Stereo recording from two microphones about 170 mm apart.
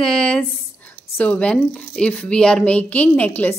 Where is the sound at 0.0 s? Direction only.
5° left (ahead or behind).